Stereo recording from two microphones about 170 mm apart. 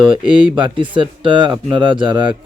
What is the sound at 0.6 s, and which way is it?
Speech, 30° right (ahead or behind).